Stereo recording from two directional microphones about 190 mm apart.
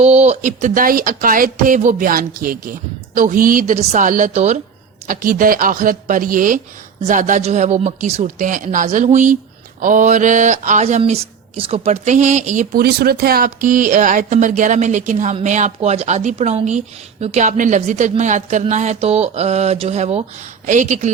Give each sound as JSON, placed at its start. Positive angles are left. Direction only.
{"t": 0.0, "sound": "speech", "side_deg": -35}